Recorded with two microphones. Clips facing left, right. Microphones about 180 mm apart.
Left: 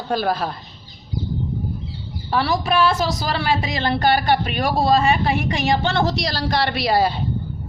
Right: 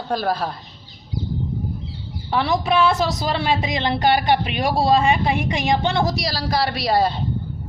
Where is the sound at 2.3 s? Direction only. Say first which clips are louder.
Even; 20° right (ahead or behind); by 7.1 s 5° left (ahead or behind).